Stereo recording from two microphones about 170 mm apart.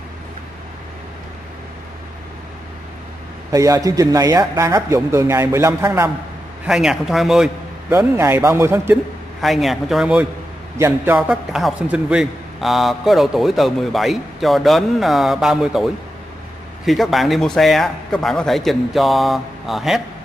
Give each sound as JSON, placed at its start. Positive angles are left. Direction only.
{"t": 3.5, "sound": "speech", "side_deg": -20}
{"t": 6.6, "sound": "a man's voice", "side_deg": -5}
{"t": 7.9, "sound": "speech", "side_deg": -15}
{"t": 9.4, "sound": "a man's voice", "side_deg": 0}